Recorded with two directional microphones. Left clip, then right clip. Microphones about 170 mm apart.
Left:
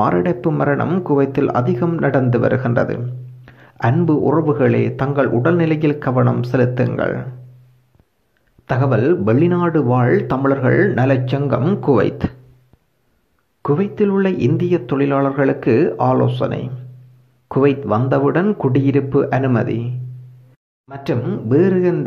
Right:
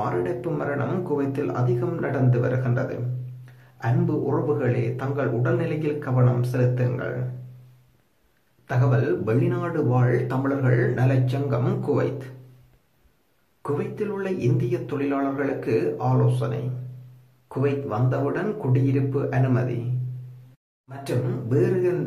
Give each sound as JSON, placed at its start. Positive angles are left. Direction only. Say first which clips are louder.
{"t": 0.0, "sound": "a man's voice", "louder": "left 9 dB", "side_deg": 40}
{"t": 8.6, "sound": "a man's voice", "louder": "left 9 dB", "side_deg": 40}
{"t": 11.6, "sound": "speech", "louder": "left 8 dB", "side_deg": 25}
{"t": 11.9, "sound": "a man's voice", "louder": "left 9 dB", "side_deg": 35}
{"t": 13.6, "sound": "a man's voice", "louder": "left 10 dB", "side_deg": 40}
{"t": 21.0, "sound": "speech", "louder": "left 7 dB", "side_deg": 40}